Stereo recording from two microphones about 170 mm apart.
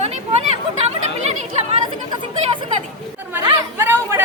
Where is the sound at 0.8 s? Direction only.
40° right (ahead or behind).